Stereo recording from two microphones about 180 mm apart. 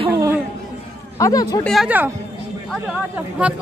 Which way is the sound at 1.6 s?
5° right (ahead or behind).